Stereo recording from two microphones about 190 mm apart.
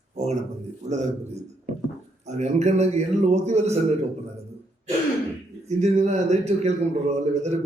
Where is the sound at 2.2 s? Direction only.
35° right (ahead or behind).